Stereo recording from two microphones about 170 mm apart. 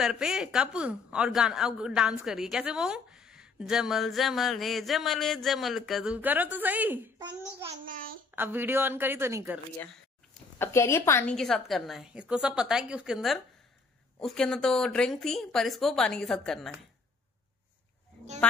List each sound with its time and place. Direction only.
0.0 s a woman's voice: 5° right (ahead or behind)
7.8 s a child's voice: 55° right (ahead or behind)
8.4 s speech: 10° right (ahead or behind)
10.6 s a woman's voice: 15° left (ahead or behind)
11.3 s a woman's voice: centre (ahead or behind)